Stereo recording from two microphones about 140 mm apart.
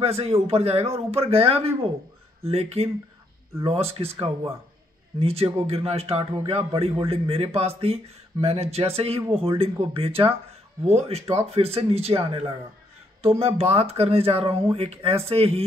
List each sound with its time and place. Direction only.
0.0 s speech: 45° right (ahead or behind)